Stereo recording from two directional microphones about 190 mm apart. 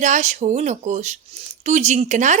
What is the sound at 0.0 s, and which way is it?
Speech, 40° right (ahead or behind).